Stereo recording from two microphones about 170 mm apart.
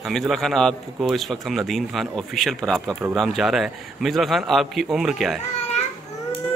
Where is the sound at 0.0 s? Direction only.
Centre (ahead or behind).